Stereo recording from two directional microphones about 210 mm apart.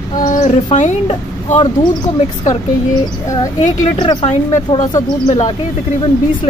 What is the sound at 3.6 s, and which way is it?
Speech, 35° left (ahead or behind).